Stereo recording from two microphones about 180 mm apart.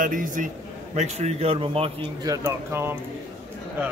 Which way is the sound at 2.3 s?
15° right (ahead or behind).